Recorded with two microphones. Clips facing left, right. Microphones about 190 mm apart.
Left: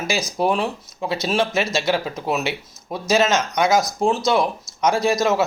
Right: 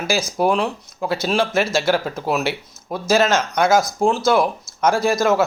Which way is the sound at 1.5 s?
55° right (ahead or behind).